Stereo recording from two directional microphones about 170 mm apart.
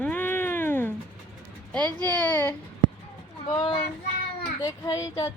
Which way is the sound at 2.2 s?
10° left (ahead or behind).